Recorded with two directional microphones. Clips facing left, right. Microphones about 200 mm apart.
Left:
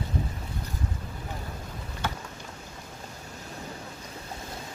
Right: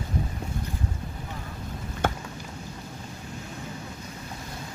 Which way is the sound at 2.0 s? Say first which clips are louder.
Right 6 dB; 50° right (ahead or behind).